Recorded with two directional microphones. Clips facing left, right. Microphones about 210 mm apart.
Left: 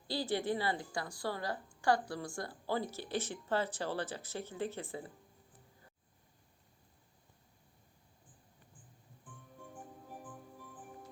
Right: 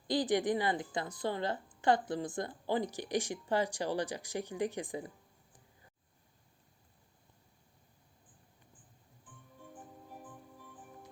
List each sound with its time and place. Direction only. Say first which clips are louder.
0.1 s a woman's voice: right 4 dB; 15° right (ahead or behind)